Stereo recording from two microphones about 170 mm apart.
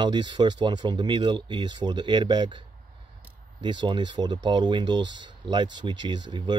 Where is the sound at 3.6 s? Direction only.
25° right (ahead or behind).